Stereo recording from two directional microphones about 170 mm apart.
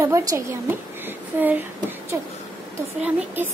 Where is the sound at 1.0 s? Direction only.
10° right (ahead or behind).